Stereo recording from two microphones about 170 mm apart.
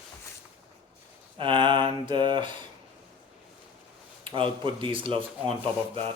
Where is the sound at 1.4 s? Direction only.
30° right (ahead or behind).